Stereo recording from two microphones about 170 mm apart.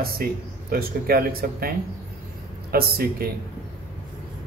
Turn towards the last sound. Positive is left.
turn(degrees=-60)  # may be behind; listen again after turning